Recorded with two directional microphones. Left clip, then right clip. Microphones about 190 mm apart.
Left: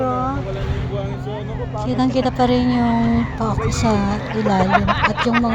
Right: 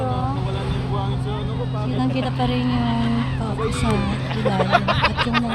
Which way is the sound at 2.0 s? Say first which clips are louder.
Left 6 dB; 35° left (ahead or behind).